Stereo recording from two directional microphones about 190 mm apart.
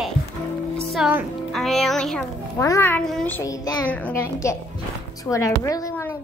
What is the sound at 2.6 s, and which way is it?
A child's voice, 15° left (ahead or behind).